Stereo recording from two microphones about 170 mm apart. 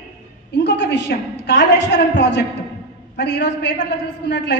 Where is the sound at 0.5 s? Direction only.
90° left.